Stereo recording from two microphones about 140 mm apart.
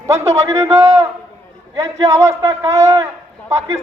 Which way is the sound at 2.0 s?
20° right (ahead or behind).